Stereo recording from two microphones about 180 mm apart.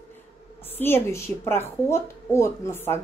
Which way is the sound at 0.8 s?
15° left (ahead or behind).